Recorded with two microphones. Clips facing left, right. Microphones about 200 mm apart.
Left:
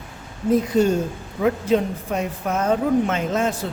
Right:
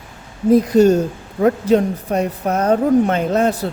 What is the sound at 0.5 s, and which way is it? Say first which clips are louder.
Speech: right 6 dB; 40° right (ahead or behind).